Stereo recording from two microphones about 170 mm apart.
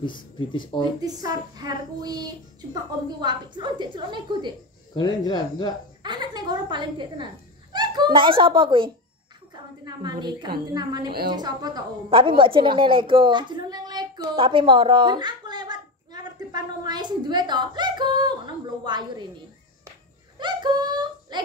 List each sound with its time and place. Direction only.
0.0 s speech: 30° left (ahead or behind)
0.7 s a woman's voice: 25° right (ahead or behind)
4.9 s speech: 25° left (ahead or behind)
6.0 s a woman's voice: 25° right (ahead or behind)
20.3 s a sound: 25° right (ahead or behind)